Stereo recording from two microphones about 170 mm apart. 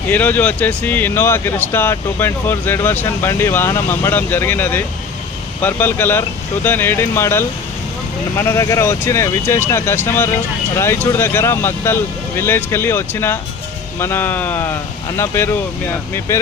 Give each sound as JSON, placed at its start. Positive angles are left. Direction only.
{"t": 0.1, "sound": "speech", "side_deg": 10}